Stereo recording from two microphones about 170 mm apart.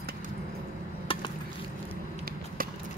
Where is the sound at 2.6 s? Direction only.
55° right (ahead or behind).